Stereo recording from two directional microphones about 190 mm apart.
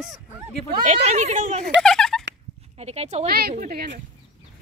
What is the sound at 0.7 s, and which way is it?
Speech, 35° right (ahead or behind).